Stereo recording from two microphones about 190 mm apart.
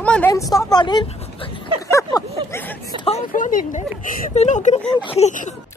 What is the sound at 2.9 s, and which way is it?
Speech, 25° right (ahead or behind).